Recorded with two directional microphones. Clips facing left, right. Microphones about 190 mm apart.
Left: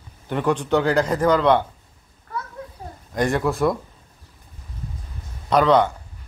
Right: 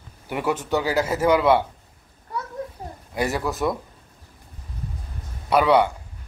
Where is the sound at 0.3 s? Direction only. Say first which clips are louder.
Left 3 dB; 10° right (ahead or behind).